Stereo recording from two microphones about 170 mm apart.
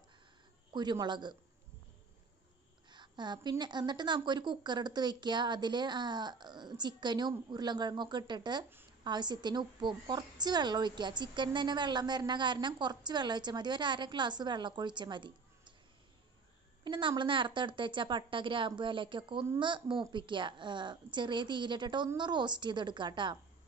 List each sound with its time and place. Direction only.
0.7 s a woman's voice: 25° right (ahead or behind)
2.9 s a woman's voice: 25° right (ahead or behind)
16.8 s a woman's voice: 25° right (ahead or behind)